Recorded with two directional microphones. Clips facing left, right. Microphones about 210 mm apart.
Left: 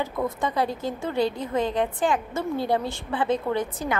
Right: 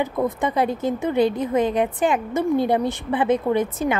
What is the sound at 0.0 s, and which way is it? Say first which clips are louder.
A woman's voice: right 4 dB; 20° right (ahead or behind).